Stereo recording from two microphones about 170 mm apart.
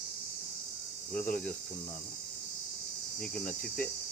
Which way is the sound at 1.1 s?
10° left (ahead or behind).